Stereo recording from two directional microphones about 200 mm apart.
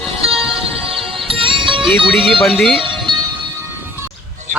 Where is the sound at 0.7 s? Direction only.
25° right (ahead or behind).